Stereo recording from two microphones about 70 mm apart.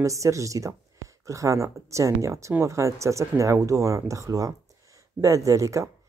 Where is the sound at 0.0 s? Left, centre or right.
Right.